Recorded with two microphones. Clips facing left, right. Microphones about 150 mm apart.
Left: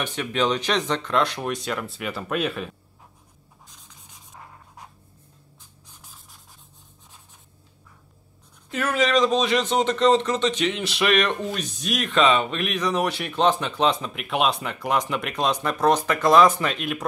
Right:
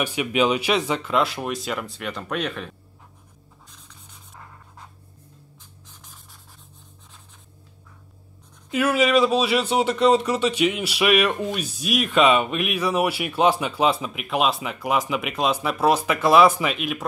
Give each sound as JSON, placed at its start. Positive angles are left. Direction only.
{"t": 0.0, "sound": "speech", "side_deg": -10}
{"t": 8.6, "sound": "speech", "side_deg": -10}